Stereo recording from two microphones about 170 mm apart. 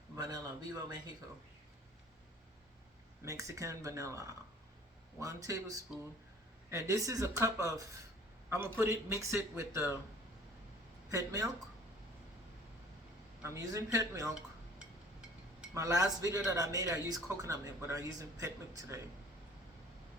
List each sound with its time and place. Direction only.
0.2 s speech: 25° right (ahead or behind)
3.2 s a man's voice: 20° right (ahead or behind)
11.1 s speech: 20° right (ahead or behind)
13.4 s speech: 20° right (ahead or behind)
15.7 s speech: 20° right (ahead or behind)